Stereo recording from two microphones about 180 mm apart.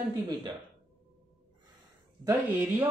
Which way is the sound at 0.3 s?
25° right (ahead or behind).